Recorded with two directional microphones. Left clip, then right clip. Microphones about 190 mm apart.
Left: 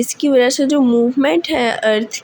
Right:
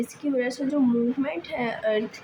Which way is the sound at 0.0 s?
40° left (ahead or behind).